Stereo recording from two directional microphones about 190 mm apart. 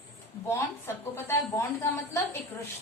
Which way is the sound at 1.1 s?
15° left (ahead or behind).